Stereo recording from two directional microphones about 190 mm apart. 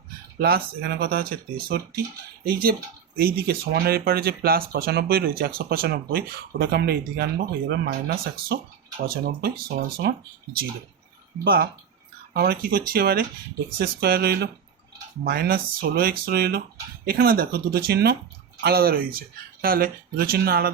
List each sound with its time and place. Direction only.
0.3 s speech: 55° right (ahead or behind)
11.4 s speech: 50° right (ahead or behind)